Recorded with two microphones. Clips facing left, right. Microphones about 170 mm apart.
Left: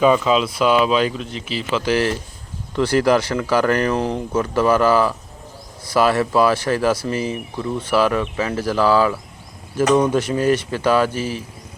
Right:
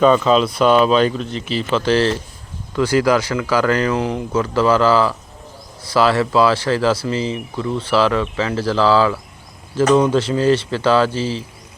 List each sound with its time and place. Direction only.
0.0 s speech: 5° left (ahead or behind)
2.7 s speech: 25° left (ahead or behind)
7.1 s speech: 20° right (ahead or behind)
7.5 s speech: 20° left (ahead or behind)
11.1 s speech: 30° right (ahead or behind)